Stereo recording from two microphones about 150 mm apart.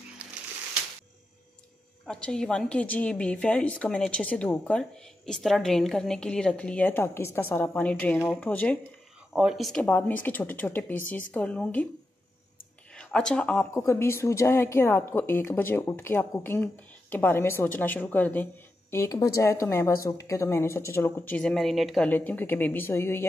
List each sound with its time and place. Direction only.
2.0 s a woman's voice: 5° left (ahead or behind)
9.3 s a woman's voice: 5° right (ahead or behind)
12.9 s a woman's voice: 5° left (ahead or behind)
21.4 s a woman's voice: 5° left (ahead or behind)